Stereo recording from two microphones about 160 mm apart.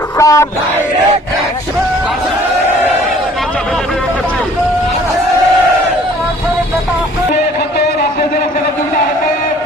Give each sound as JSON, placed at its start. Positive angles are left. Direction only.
{"t": 0.2, "sound": "crowd", "side_deg": 20}